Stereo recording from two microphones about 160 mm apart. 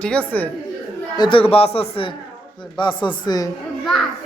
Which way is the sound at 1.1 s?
30° left (ahead or behind).